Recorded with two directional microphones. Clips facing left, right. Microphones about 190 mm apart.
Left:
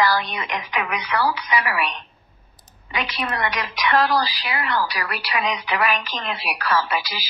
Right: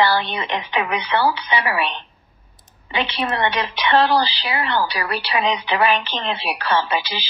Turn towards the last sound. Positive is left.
turn(degrees=-25)  # may be behind; listen again after turning